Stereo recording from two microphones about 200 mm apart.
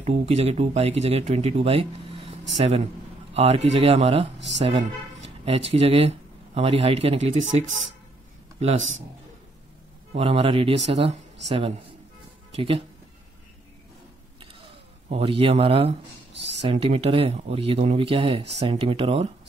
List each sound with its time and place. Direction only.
0.0 s speech: 35° right (ahead or behind)
3.3 s a man's voice: 30° right (ahead or behind)
10.1 s speech: 30° right (ahead or behind)
15.0 s speech: 30° right (ahead or behind)